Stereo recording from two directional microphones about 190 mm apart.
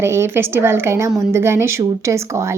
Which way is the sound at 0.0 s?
15° right (ahead or behind).